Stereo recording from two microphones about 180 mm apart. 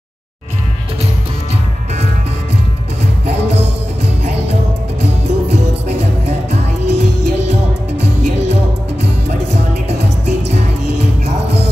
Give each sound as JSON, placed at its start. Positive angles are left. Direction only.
{"t": 5.0, "sound": "music", "side_deg": -35}